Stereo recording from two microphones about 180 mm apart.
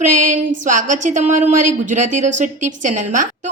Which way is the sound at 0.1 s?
45° right (ahead or behind).